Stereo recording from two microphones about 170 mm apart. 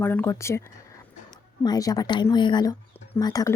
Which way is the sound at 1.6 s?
20° left (ahead or behind).